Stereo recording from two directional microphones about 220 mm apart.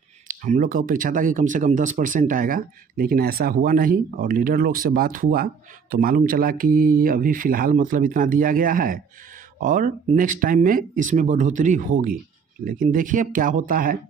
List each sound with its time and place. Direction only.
0.3 s speech: 35° right (ahead or behind)